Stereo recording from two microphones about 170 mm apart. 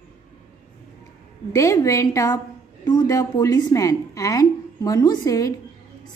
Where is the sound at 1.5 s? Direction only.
20° left (ahead or behind).